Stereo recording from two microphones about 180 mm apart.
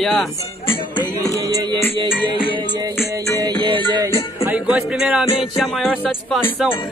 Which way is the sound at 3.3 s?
25° right (ahead or behind).